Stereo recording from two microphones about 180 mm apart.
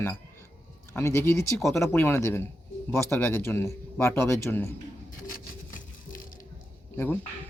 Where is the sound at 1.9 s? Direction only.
15° left (ahead or behind).